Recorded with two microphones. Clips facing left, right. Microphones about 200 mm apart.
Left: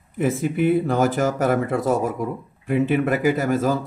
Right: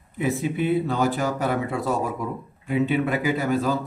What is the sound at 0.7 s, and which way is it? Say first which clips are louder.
Speech: left 3 dB; 45° left (ahead or behind).